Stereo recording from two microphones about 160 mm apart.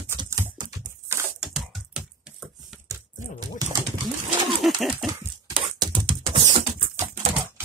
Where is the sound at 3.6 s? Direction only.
25° right (ahead or behind).